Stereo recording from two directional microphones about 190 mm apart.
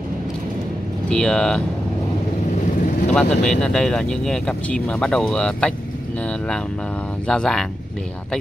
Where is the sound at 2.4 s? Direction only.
40° left (ahead or behind).